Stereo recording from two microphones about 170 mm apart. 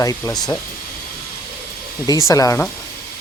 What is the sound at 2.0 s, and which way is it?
Speech, 20° left (ahead or behind).